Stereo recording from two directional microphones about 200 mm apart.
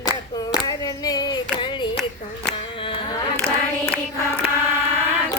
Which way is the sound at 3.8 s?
5° left (ahead or behind).